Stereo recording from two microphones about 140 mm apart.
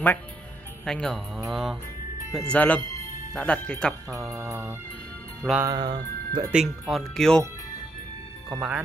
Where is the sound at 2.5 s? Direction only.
10° left (ahead or behind).